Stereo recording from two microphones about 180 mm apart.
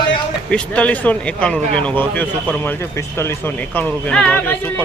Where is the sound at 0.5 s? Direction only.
5° left (ahead or behind).